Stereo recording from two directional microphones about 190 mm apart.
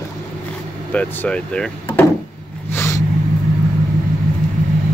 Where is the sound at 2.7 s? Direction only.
15° left (ahead or behind).